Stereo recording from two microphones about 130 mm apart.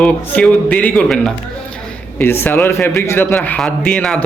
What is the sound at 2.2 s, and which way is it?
A man's voice, 15° left (ahead or behind).